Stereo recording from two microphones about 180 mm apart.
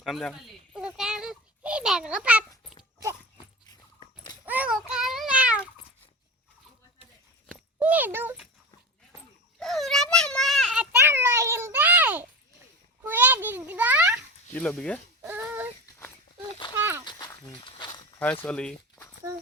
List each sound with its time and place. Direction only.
0.0 s a sound: centre (ahead or behind)
4.4 s babbling: 10° right (ahead or behind)
7.8 s a sound: 10° right (ahead or behind)
9.6 s a sound: centre (ahead or behind)
14.5 s speech: 5° left (ahead or behind)
15.2 s child singing: 10° right (ahead or behind)
16.7 s horse: 10° right (ahead or behind)
17.1 s walk: 25° left (ahead or behind)
18.4 s speech: 5° left (ahead or behind)